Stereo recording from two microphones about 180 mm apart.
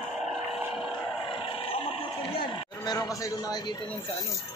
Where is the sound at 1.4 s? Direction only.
30° left (ahead or behind).